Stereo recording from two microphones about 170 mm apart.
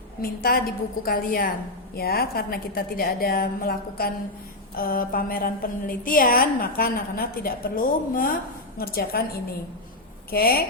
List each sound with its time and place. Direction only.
0.2 s a woman's voice: 60° left (ahead or behind)
10.3 s a woman's voice: 60° left (ahead or behind)